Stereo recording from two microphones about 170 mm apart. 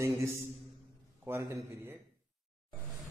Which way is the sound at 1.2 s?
15° right (ahead or behind).